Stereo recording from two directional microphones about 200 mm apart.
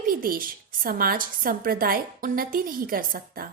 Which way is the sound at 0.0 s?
45° right (ahead or behind).